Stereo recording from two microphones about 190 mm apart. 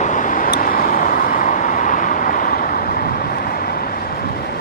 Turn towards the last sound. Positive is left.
turn(degrees=50)  # may be behind; listen again after turning